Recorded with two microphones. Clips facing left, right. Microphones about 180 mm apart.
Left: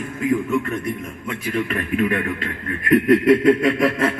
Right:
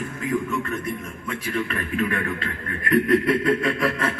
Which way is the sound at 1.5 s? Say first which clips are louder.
Left 5 dB; 25° left (ahead or behind).